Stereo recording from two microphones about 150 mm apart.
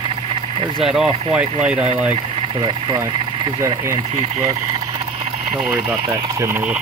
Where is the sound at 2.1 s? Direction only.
35° right (ahead or behind).